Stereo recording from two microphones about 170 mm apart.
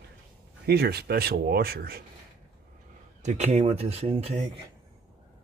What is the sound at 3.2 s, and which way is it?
Speech, 40° right (ahead or behind).